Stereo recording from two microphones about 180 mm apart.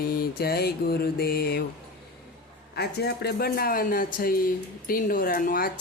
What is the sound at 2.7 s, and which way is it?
Speech, 65° left (ahead or behind).